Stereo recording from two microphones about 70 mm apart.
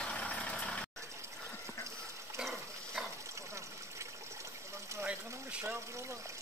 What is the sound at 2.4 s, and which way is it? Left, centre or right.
Dog, centre.